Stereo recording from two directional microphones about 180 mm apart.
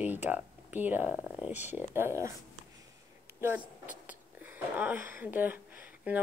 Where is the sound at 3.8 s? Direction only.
10° right (ahead or behind).